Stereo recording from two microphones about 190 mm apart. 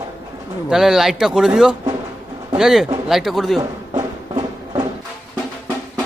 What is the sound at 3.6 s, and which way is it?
Music, 20° right (ahead or behind).